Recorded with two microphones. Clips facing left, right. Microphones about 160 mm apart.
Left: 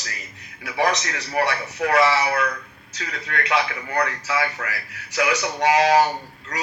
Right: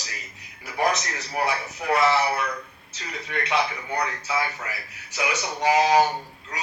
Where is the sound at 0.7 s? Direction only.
85° left.